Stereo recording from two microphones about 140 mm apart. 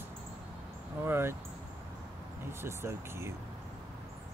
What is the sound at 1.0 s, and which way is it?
Speech, 15° right (ahead or behind).